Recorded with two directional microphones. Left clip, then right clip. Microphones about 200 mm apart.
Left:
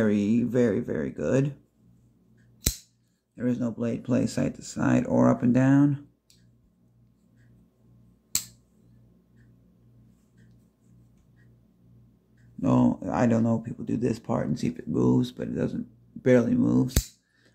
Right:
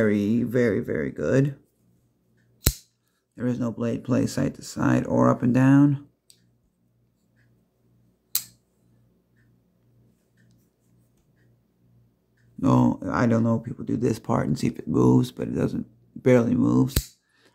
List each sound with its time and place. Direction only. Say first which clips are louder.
0.0 s speech: right 2 dB; 10° right (ahead or behind)
3.3 s speech: right 1 dB; 15° right (ahead or behind)
12.5 s speech: right 2 dB; 15° right (ahead or behind)